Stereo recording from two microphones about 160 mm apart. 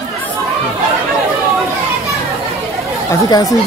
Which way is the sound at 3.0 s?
20° left (ahead or behind).